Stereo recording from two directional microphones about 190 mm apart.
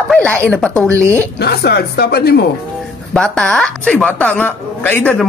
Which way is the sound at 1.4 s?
60° left (ahead or behind).